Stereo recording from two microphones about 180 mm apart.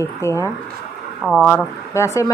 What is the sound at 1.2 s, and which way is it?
Speech, centre (ahead or behind).